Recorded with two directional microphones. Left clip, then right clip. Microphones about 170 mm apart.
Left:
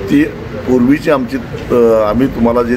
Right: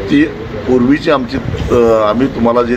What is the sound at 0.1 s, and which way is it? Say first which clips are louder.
A man's voice: right 1 dB; 20° left (ahead or behind).